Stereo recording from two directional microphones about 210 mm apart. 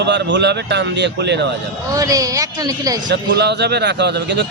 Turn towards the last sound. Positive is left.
turn(degrees=-55)  # may be behind; listen again after turning